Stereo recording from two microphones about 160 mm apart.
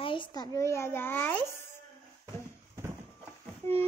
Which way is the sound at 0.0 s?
30° left (ahead or behind).